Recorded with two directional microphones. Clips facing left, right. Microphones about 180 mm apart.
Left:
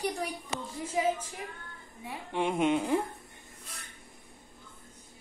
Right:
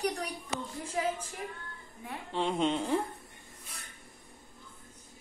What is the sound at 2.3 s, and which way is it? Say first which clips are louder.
Speech: left 2 dB; 15° left (ahead or behind).